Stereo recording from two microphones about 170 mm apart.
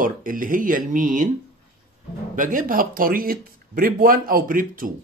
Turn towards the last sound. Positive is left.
turn(degrees=-55)  # may be behind; listen again after turning